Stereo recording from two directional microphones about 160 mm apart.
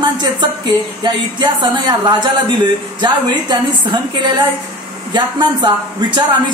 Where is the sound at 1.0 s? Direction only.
25° right (ahead or behind).